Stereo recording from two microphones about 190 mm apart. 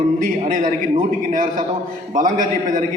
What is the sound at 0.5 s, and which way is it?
A man's voice, 45° right (ahead or behind).